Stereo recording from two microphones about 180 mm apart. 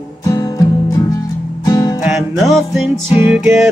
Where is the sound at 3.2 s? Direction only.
10° right (ahead or behind).